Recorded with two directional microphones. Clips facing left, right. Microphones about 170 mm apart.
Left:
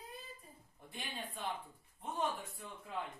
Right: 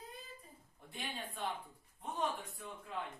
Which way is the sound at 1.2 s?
Centre (ahead or behind).